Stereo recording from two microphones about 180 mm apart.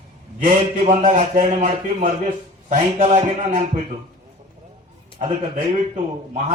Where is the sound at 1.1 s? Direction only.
40° right (ahead or behind).